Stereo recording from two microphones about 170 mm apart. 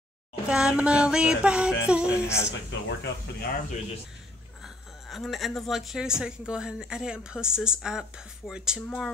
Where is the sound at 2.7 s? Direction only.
90° left.